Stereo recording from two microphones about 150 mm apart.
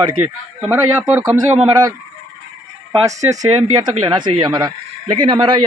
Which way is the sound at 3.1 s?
20° right (ahead or behind).